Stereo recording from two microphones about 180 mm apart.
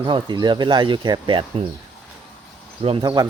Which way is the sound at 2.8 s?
25° right (ahead or behind).